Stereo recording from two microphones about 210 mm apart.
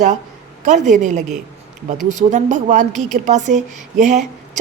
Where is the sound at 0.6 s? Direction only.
35° right (ahead or behind).